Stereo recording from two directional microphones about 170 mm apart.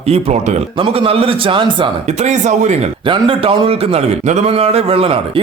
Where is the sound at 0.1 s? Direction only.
40° right (ahead or behind).